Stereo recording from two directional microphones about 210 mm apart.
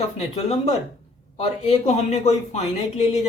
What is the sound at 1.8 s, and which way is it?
Speech, 30° left (ahead or behind).